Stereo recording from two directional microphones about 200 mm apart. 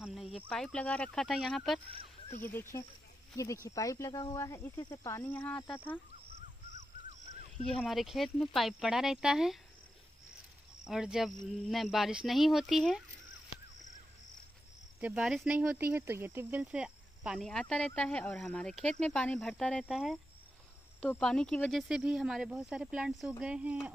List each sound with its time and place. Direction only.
0.0 s cricket: centre (ahead or behind)
0.5 s speech: 5° left (ahead or behind)
7.8 s speech: centre (ahead or behind)
10.8 s speech: 5° right (ahead or behind)
15.0 s speech: 5° right (ahead or behind)